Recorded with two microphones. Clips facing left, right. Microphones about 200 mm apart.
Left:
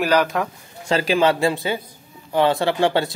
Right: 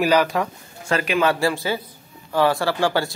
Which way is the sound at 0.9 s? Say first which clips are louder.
Left 2 dB; 25° left (ahead or behind).